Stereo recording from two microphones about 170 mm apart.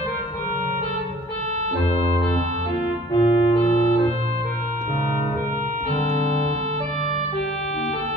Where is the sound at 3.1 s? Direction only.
30° left (ahead or behind).